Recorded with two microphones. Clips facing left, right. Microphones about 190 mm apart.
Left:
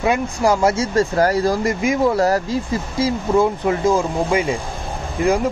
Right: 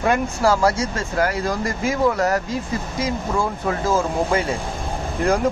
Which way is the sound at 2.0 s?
30° left (ahead or behind).